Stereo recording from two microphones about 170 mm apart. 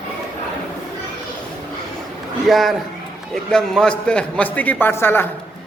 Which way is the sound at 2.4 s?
Centre (ahead or behind).